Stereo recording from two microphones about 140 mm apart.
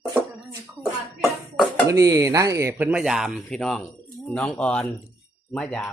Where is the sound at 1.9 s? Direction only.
25° right (ahead or behind).